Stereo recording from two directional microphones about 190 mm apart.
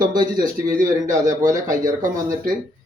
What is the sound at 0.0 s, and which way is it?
Speech, 20° right (ahead or behind).